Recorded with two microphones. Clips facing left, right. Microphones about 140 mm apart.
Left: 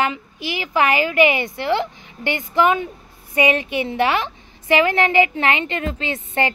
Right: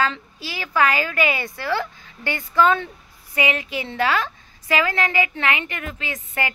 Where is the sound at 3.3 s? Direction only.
25° left (ahead or behind).